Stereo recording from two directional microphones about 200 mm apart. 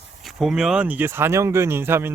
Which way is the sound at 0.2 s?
Centre (ahead or behind).